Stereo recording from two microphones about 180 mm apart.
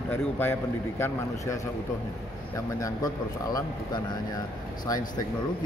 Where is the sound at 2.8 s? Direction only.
20° left (ahead or behind).